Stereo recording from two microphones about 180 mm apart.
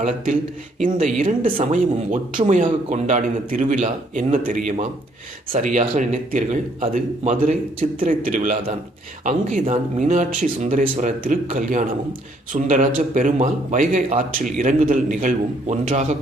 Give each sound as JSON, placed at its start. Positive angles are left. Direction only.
{"t": 0.9, "sound": "speech", "side_deg": -45}